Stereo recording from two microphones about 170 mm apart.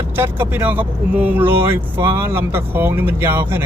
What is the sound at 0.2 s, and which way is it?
Speech, 10° right (ahead or behind).